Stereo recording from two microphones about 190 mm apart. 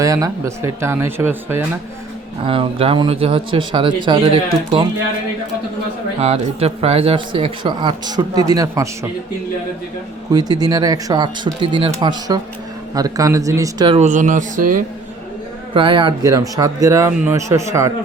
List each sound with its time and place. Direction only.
0.0 s speech: 15° right (ahead or behind)
2.4 s speech: 30° right (ahead or behind)
6.1 s speech: 35° right (ahead or behind); by 8.9 s 15° right (ahead or behind)
10.3 s speech: 20° right (ahead or behind)
14.1 s speech: 45° right (ahead or behind)
15.7 s speech: 25° right (ahead or behind)